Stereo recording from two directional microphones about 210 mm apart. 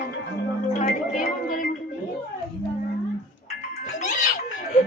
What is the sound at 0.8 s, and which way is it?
Music, 35° left (ahead or behind).